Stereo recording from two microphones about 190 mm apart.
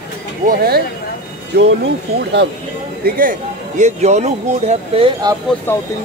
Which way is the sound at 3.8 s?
35° right (ahead or behind).